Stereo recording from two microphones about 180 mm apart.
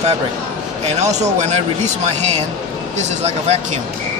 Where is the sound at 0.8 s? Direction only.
40° right (ahead or behind).